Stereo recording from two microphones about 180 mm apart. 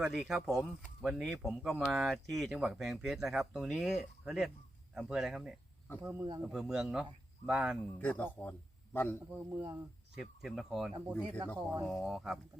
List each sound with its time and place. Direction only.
0.0 s speech: centre (ahead or behind)
6.0 s speech: 15° right (ahead or behind)
6.4 s speech: centre (ahead or behind)
8.0 s speech: 10° left (ahead or behind)
9.5 s speech: 15° right (ahead or behind)
10.2 s speech: centre (ahead or behind)
11.1 s speech: 10° left (ahead or behind)
11.8 s speech: centre (ahead or behind)